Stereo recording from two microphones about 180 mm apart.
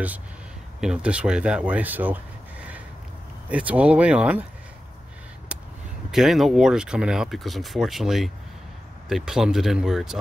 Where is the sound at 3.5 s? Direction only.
5° right (ahead or behind).